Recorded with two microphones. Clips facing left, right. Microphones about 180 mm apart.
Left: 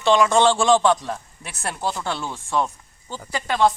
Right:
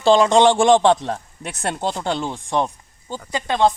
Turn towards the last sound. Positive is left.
turn(degrees=-20)  # may be behind; listen again after turning